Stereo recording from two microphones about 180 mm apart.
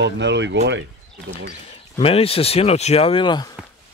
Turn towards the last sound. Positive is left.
turn(degrees=25)  # may be behind; listen again after turning